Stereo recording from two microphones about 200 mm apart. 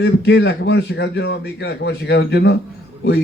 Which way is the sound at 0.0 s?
60° left (ahead or behind).